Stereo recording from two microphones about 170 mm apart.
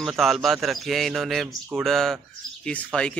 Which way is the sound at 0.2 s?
Centre (ahead or behind).